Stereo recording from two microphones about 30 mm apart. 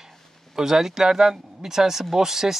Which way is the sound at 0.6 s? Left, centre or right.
Centre.